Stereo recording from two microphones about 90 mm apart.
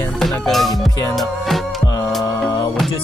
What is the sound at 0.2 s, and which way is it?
Music, centre (ahead or behind).